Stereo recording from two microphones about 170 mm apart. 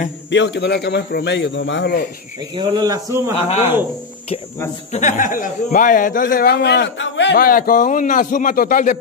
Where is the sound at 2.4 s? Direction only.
30° right (ahead or behind); by 3.9 s 10° right (ahead or behind).